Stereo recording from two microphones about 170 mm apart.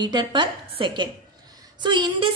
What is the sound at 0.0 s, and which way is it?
A woman's voice, 25° right (ahead or behind).